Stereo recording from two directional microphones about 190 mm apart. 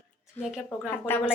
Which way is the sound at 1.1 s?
10° left (ahead or behind).